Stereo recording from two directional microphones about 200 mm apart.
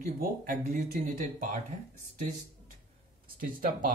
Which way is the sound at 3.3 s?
45° right (ahead or behind).